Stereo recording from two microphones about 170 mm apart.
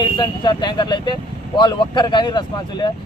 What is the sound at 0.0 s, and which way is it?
Speech, 25° left (ahead or behind).